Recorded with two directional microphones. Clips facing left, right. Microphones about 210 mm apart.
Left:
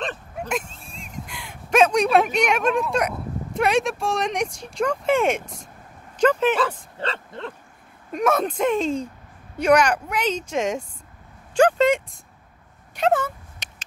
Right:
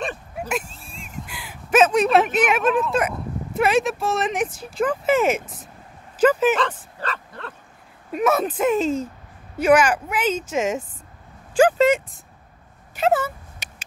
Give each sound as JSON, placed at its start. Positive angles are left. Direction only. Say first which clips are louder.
{"t": 0.0, "sound": "gasp", "louder": "right 1 dB", "side_deg": -10}
{"t": 6.1, "sound": "speech", "louder": "right 2 dB", "side_deg": -5}
{"t": 7.0, "sound": "speech", "louder": "left 3 dB", "side_deg": 25}
{"t": 8.1, "sound": "speech", "louder": "right 1 dB", "side_deg": -5}
{"t": 11.5, "sound": "a sound", "louder": "right 1 dB", "side_deg": -5}